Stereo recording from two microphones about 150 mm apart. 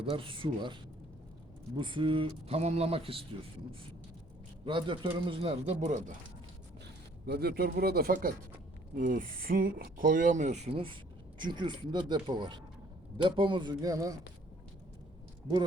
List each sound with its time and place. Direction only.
0.0 s speech: 35° right (ahead or behind)
4.6 s speech: 35° right (ahead or behind); by 6.1 s 55° right (ahead or behind)
7.3 s speech: 90° right
9.0 s speech: 65° right (ahead or behind); by 10.9 s 40° right (ahead or behind)
11.3 s speech: 30° right (ahead or behind)